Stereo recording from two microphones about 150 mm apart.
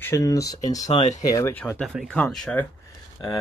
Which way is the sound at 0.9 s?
45° left (ahead or behind).